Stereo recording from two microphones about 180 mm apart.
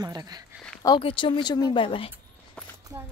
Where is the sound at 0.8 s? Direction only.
30° left (ahead or behind).